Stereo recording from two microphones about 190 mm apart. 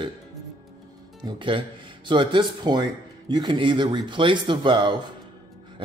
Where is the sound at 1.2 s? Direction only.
25° right (ahead or behind).